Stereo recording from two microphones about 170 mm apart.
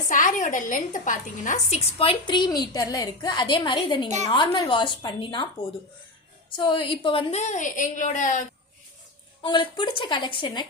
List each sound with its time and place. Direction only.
0.1 s a woman's voice: 50° left (ahead or behind)
2.0 s a woman's voice: 30° left (ahead or behind); by 8.4 s 45° left (ahead or behind)
9.4 s a woman's voice: 30° left (ahead or behind)